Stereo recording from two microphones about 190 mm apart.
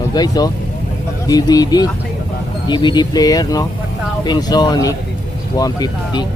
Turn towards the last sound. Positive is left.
turn(degrees=20)  # may be behind; listen again after turning